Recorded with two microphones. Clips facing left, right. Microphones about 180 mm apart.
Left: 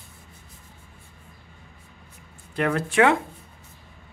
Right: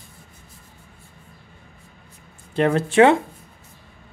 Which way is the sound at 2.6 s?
25° right (ahead or behind).